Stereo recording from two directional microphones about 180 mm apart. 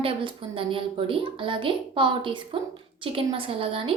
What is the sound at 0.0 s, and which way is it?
A woman's voice, 30° right (ahead or behind).